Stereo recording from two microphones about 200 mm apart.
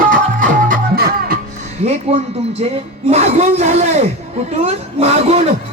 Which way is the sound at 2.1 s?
30° right (ahead or behind).